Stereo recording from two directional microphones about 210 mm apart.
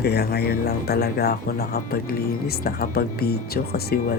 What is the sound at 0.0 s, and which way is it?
Speech, 50° left (ahead or behind).